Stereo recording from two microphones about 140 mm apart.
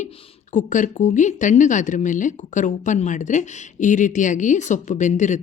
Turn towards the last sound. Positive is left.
turn(degrees=60)  # may be behind; listen again after turning